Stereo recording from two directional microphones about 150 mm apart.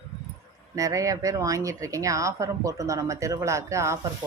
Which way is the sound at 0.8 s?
20° right (ahead or behind).